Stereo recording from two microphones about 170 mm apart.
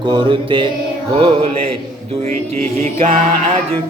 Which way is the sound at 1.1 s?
30° right (ahead or behind).